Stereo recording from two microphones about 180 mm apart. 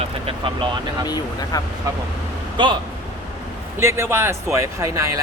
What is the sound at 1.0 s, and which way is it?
Speech, 20° left (ahead or behind).